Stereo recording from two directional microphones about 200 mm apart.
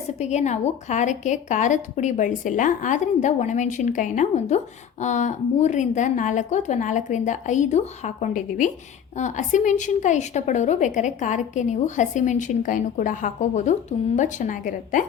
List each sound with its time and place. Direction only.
0.2 s a woman's voice: 35° left (ahead or behind)